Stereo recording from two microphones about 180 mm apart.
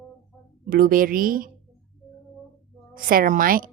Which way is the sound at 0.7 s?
50° right (ahead or behind).